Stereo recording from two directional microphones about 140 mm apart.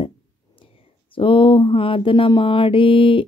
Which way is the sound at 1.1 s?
40° left (ahead or behind).